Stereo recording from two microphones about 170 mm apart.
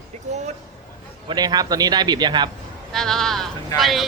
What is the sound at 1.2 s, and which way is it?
A man's voice, 25° right (ahead or behind).